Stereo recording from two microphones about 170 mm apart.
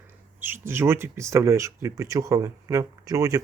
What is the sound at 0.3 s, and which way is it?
Speech, 10° right (ahead or behind).